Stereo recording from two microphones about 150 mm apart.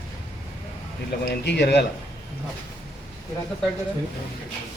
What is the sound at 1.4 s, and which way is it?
Speech, 90° left.